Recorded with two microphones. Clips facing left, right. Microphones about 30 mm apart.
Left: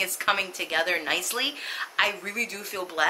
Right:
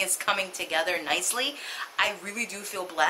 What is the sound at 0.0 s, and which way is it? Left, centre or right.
A woman's voice, centre.